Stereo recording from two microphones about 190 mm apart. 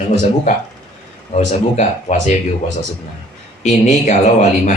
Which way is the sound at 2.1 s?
35° left (ahead or behind).